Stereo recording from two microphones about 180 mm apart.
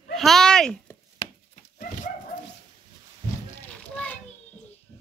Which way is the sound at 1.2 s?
30° left (ahead or behind).